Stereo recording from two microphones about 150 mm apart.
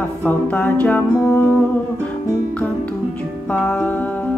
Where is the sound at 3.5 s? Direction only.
10° left (ahead or behind).